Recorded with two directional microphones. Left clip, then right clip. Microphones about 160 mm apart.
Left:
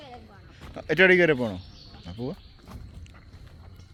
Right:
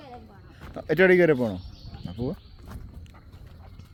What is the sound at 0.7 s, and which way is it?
Speech, 25° right (ahead or behind).